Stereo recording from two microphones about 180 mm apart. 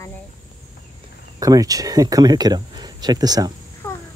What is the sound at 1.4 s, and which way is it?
Speech, 20° right (ahead or behind).